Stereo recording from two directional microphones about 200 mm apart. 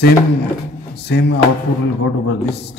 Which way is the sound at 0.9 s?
55° left (ahead or behind).